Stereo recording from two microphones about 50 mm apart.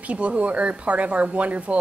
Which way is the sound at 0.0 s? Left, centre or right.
Right.